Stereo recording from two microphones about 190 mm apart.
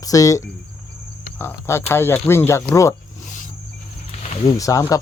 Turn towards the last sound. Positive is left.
turn(degrees=20)  # may be behind; listen again after turning